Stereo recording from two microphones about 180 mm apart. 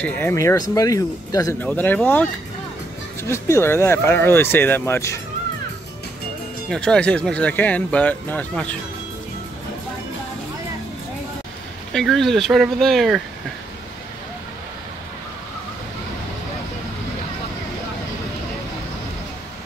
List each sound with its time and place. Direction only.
0.0 s speech: 10° left (ahead or behind)
6.7 s speech: 5° left (ahead or behind)
11.9 s speech: centre (ahead or behind)